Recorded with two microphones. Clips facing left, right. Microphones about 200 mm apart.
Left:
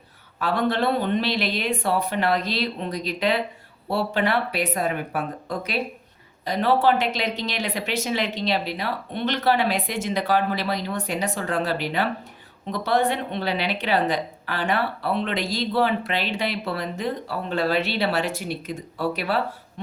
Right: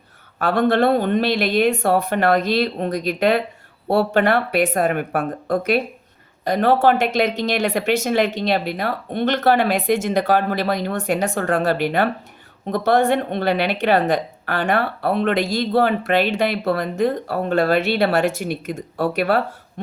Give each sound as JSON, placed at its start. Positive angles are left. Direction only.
{"t": 0.3, "sound": "a woman's voice", "side_deg": -50}